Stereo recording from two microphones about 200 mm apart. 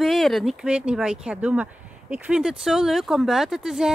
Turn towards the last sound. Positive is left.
turn(degrees=0)  # may be behind; listen again after turning